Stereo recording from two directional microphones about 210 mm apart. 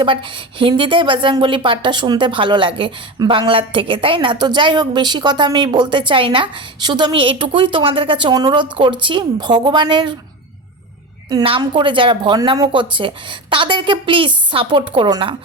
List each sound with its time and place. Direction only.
0.0 s speech: 25° right (ahead or behind)
11.3 s speech: 20° right (ahead or behind)